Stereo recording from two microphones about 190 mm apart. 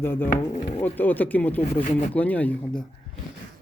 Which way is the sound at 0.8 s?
10° left (ahead or behind).